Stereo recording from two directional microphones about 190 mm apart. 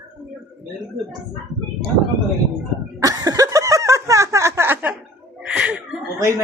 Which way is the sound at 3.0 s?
20° right (ahead or behind).